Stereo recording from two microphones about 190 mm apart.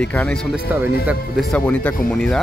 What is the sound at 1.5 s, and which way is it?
Speech, 5° left (ahead or behind).